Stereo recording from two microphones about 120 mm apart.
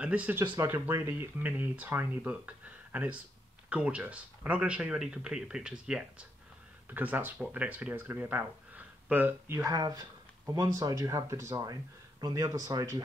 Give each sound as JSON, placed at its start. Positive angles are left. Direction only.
{"t": 0.0, "sound": "speech", "side_deg": -15}
{"t": 9.7, "sound": "speech", "side_deg": -30}